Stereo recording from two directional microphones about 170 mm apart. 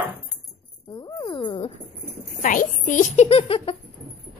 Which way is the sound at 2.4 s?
50° left (ahead or behind).